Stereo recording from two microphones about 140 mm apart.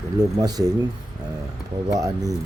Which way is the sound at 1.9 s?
25° right (ahead or behind).